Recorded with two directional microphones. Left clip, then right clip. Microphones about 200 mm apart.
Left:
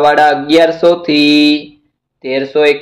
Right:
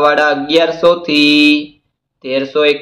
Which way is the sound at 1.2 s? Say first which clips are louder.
Right 1 dB; 40° left (ahead or behind).